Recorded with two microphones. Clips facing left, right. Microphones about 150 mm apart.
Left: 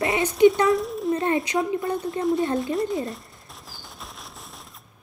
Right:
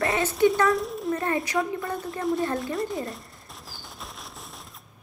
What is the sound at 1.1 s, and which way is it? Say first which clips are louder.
Speech: left 3 dB; 25° left (ahead or behind).